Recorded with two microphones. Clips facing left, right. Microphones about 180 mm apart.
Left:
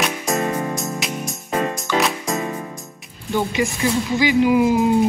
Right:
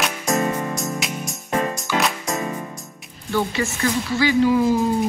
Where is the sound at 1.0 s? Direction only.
Centre (ahead or behind).